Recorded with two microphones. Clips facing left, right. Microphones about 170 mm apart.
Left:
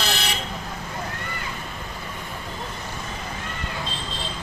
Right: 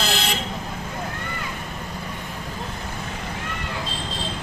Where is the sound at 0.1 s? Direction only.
90° right.